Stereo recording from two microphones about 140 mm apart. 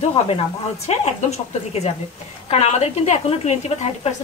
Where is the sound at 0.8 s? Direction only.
50° left (ahead or behind).